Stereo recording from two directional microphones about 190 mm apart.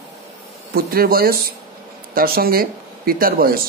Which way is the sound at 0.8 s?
50° right (ahead or behind).